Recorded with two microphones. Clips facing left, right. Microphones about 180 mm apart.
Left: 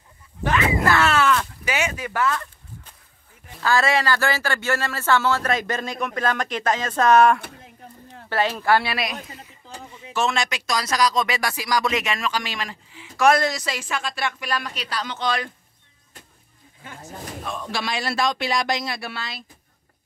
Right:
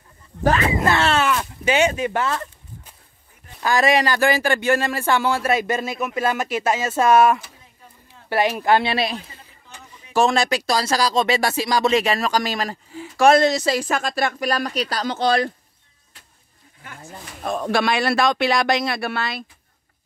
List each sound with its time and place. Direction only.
0.4 s a sound: 40° right (ahead or behind)
0.7 s a sound: 25° right (ahead or behind)
1.7 s a man's voice: 30° right (ahead or behind)
3.6 s speech: 15° right (ahead or behind)
7.3 s a sound: 60° left (ahead or behind)
8.3 s a man's voice: 15° right (ahead or behind)
9.7 s a sound: 35° left (ahead or behind)
10.1 s speech: 35° right (ahead or behind)
13.3 s a man's voice: 25° right (ahead or behind)
13.7 s speech: 45° right (ahead or behind)
16.8 s speech: 25° left (ahead or behind)
17.4 s speech: 50° right (ahead or behind)